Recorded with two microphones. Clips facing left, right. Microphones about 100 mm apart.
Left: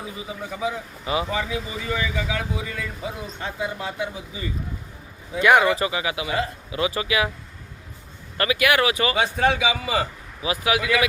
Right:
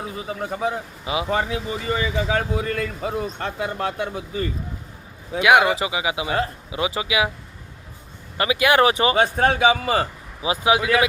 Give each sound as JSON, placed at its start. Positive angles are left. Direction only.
{"t": 0.2, "sound": "a man's voice", "side_deg": -55}
{"t": 1.0, "sound": "speech", "side_deg": -10}
{"t": 1.3, "sound": "a man's voice", "side_deg": -45}
{"t": 1.8, "sound": "speech", "side_deg": -30}
{"t": 2.3, "sound": "speech", "side_deg": -55}
{"t": 5.4, "sound": "speech", "side_deg": -10}
{"t": 8.4, "sound": "speech", "side_deg": -25}
{"t": 9.1, "sound": "a man's voice", "side_deg": -45}
{"t": 10.4, "sound": "speech", "side_deg": -25}